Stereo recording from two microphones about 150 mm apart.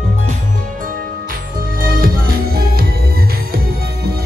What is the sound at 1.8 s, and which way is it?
Music, 75° right (ahead or behind).